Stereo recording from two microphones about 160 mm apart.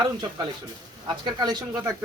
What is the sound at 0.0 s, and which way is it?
Speech, 25° right (ahead or behind).